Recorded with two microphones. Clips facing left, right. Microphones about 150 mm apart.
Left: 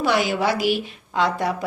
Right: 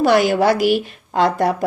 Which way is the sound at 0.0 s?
50° right (ahead or behind).